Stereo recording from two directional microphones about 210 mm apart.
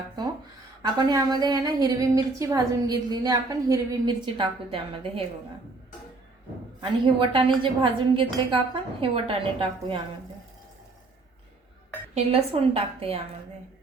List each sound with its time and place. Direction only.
0.8 s a woman's voice: 20° right (ahead or behind)
7.0 s a woman's voice: 25° right (ahead or behind)
12.1 s a woman's voice: 30° right (ahead or behind)